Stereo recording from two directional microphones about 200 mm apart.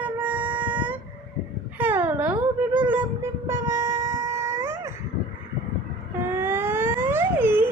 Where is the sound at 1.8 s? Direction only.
10° right (ahead or behind).